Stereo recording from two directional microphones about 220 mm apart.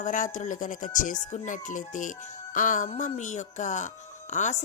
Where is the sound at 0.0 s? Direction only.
35° left (ahead or behind).